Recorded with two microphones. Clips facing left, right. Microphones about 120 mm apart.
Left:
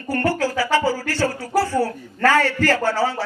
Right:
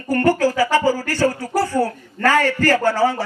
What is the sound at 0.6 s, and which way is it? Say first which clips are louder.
Speech: right 2 dB; 15° right (ahead or behind).